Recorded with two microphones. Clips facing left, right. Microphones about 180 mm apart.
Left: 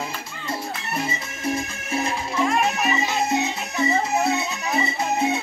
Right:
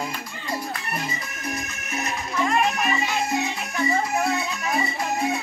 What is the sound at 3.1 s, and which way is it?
Music, 20° left (ahead or behind).